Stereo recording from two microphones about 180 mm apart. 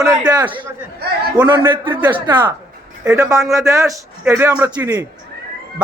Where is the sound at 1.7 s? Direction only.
25° right (ahead or behind).